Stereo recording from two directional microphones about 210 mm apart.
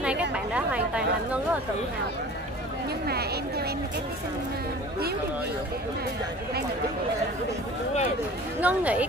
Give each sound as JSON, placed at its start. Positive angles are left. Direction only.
{"t": 0.0, "sound": "chatter", "side_deg": -5}
{"t": 3.1, "sound": "a woman's voice", "side_deg": -50}
{"t": 8.5, "sound": "speech", "side_deg": -5}